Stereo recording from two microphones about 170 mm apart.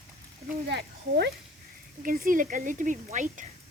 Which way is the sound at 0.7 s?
80° right.